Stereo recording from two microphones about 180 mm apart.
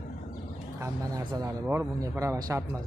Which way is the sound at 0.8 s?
20° right (ahead or behind).